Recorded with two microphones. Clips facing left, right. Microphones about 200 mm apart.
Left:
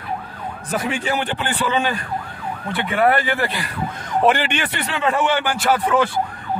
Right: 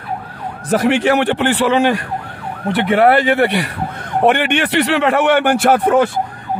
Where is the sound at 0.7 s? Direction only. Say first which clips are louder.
Right 10 dB; 80° right; by 6.0 s 55° right (ahead or behind).